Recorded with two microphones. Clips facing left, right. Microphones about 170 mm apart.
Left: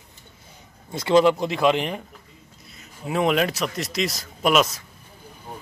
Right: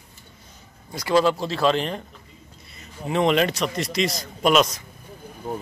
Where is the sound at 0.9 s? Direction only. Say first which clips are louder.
Left 3 dB; 20° left (ahead or behind).